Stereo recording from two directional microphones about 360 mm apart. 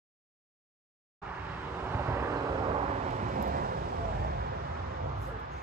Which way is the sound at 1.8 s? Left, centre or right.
Centre.